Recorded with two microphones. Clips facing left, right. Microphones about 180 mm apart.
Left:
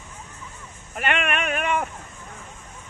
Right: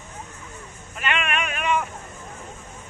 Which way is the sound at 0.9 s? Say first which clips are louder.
Left 2 dB; 55° left (ahead or behind).